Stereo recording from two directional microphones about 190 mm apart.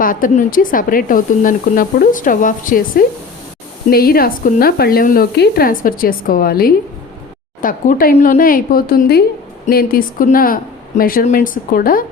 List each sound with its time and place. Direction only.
0.0 s speech: 45° left (ahead or behind)